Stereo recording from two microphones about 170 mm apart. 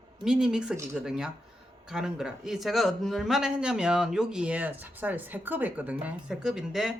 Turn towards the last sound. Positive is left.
turn(degrees=0)  # may be behind; listen again after turning